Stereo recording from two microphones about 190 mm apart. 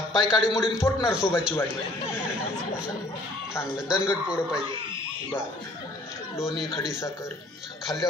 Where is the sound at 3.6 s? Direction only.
5° right (ahead or behind).